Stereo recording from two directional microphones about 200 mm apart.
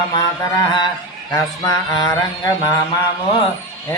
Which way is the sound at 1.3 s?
15° left (ahead or behind).